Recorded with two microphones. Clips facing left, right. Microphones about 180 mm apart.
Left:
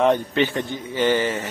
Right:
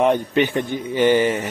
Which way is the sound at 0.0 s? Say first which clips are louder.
Right 1 dB; 15° right (ahead or behind).